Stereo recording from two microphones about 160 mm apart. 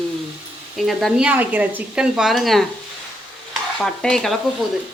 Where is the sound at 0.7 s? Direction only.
Centre (ahead or behind).